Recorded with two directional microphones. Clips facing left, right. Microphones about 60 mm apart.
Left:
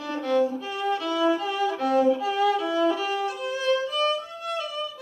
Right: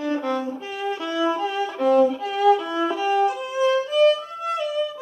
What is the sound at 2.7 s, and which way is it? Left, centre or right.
Violin, centre.